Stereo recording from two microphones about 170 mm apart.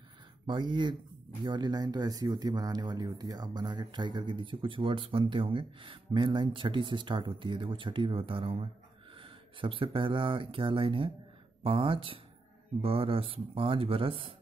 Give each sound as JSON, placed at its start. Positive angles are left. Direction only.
{"t": 0.5, "sound": "speech", "side_deg": -25}